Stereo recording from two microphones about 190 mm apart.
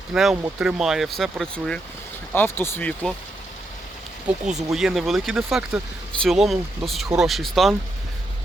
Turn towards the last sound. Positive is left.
turn(degrees=0)  # may be behind; listen again after turning